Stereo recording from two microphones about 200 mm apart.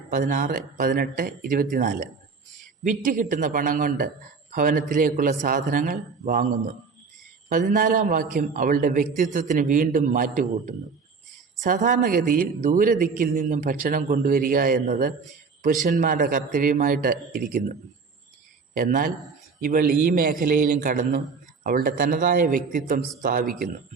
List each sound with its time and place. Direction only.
0.1 s a man's voice: 40° right (ahead or behind)